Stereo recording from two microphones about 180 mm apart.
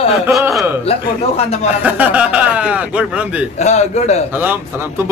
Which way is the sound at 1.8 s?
10° right (ahead or behind).